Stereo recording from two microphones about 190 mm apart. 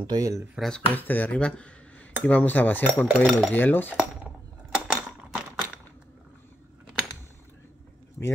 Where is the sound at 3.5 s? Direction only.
10° left (ahead or behind).